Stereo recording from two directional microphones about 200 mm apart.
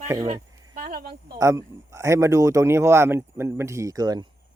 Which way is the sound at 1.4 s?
15° right (ahead or behind).